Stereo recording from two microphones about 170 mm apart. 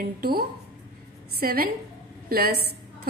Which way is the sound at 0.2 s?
65° right (ahead or behind).